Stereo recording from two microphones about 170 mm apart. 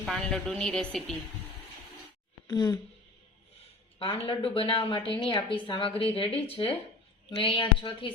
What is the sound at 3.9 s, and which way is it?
A woman's voice, 35° left (ahead or behind).